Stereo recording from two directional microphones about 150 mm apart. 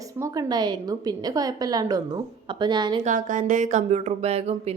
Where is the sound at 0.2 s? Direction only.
25° right (ahead or behind).